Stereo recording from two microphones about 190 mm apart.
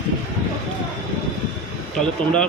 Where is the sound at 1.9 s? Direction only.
5° left (ahead or behind).